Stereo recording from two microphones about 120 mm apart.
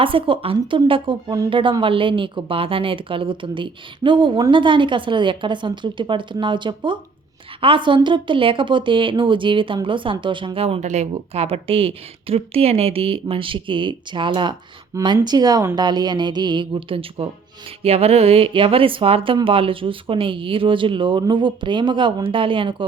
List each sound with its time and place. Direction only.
0.0 s a woman's voice: 45° right (ahead or behind)
10.8 s a woman's voice: 75° right (ahead or behind); by 22.9 s 45° right (ahead or behind)